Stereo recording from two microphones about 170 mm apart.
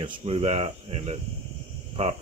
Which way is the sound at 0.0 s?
30° right (ahead or behind).